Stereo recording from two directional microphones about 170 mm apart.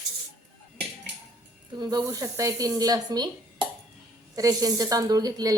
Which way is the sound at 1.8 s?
20° right (ahead or behind).